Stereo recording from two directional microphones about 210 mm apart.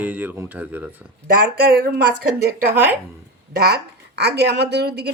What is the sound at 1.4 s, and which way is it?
Speech, 45° right (ahead or behind).